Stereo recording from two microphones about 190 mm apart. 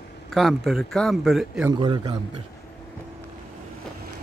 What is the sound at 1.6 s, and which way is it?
Speech, 25° right (ahead or behind).